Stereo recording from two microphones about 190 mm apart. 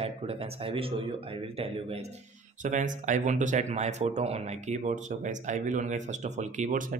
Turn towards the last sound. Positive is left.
turn(degrees=-40)  # may be behind; listen again after turning